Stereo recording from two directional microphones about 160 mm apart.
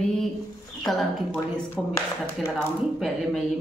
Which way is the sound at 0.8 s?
Centre (ahead or behind).